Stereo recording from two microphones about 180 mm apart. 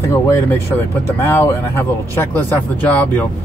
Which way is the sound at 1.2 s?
15° left (ahead or behind).